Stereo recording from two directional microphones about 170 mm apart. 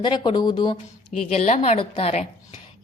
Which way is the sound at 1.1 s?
45° left (ahead or behind).